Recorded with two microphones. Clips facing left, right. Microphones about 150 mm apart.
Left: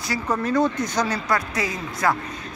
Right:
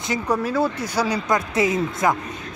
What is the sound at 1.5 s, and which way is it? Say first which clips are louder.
Speech: right 7 dB; 25° right (ahead or behind).